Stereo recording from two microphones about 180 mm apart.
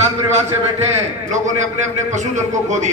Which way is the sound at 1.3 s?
40° right (ahead or behind).